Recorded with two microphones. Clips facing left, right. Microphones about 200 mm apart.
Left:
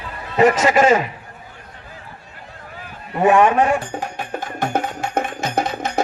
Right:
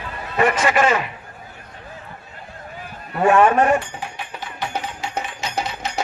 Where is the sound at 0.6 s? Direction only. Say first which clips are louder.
Left 3 dB; 25° left (ahead or behind).